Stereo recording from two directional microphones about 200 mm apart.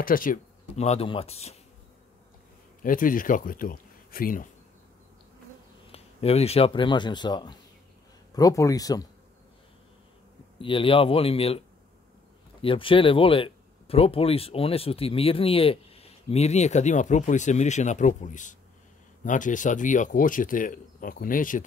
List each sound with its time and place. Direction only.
0.0 s speech: 45° left (ahead or behind)
2.8 s speech: 45° left (ahead or behind)
5.9 s speech: 30° left (ahead or behind)
10.6 s speech: 25° left (ahead or behind)
12.6 s speech: 25° left (ahead or behind); by 21.6 s 40° left (ahead or behind)